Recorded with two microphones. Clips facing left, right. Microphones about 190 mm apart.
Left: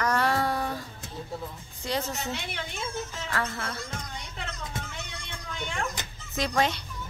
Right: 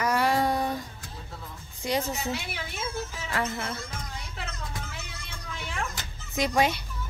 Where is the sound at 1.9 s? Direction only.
10° right (ahead or behind).